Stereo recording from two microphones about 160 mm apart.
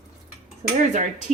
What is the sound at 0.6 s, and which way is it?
Speech, 45° right (ahead or behind).